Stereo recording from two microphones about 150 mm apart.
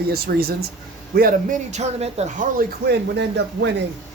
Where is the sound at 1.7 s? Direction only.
45° right (ahead or behind); by 3.2 s 80° right.